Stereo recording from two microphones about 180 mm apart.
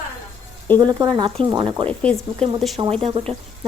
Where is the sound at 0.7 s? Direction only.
20° right (ahead or behind).